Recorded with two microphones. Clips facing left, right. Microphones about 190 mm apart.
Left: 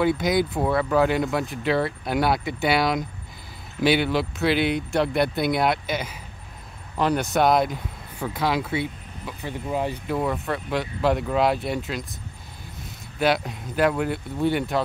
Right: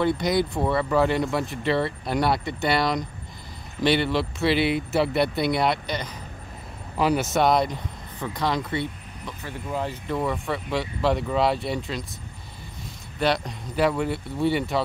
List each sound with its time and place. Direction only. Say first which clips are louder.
0.0 s speech: left 1 dB; centre (ahead or behind)
9.4 s speech: left 3 dB; 15° left (ahead or behind)
10.0 s speech: left 1 dB; 5° left (ahead or behind)
13.2 s speech: left 2 dB; 5° left (ahead or behind)